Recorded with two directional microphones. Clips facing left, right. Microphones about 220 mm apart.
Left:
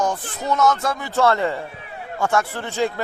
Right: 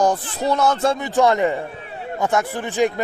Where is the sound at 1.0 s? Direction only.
15° right (ahead or behind).